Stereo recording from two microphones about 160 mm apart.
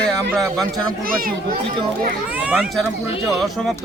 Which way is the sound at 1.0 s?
65° right (ahead or behind).